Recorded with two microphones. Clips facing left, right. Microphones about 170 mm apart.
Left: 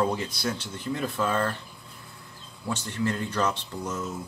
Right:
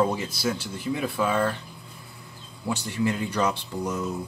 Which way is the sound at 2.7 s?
10° right (ahead or behind).